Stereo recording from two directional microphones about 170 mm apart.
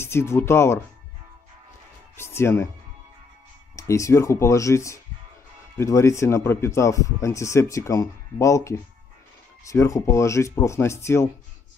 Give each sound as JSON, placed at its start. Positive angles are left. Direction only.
{"t": 0.0, "sound": "speech", "side_deg": 15}
{"t": 2.1, "sound": "speech", "side_deg": 15}
{"t": 3.7, "sound": "speech", "side_deg": 20}